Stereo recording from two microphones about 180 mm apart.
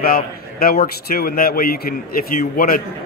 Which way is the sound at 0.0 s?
55° left (ahead or behind).